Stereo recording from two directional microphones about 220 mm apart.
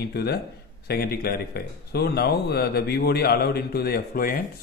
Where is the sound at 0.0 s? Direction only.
45° left (ahead or behind).